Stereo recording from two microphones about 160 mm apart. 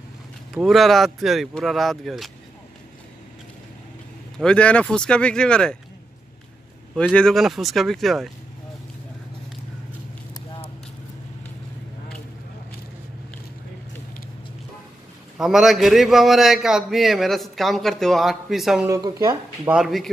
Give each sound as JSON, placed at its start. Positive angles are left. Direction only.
{"t": 0.6, "sound": "a man's voice", "side_deg": 0}
{"t": 4.4, "sound": "a man's voice", "side_deg": 5}
{"t": 7.0, "sound": "a man's voice", "side_deg": 5}
{"t": 10.3, "sound": "clip-clop", "side_deg": 30}
{"t": 15.3, "sound": "a man's voice", "side_deg": 0}
{"t": 18.9, "sound": "speech", "side_deg": -20}
{"t": 19.7, "sound": "a man's voice", "side_deg": 0}